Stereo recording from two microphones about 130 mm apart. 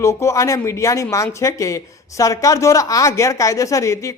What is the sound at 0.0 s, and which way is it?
A woman's voice, 20° left (ahead or behind).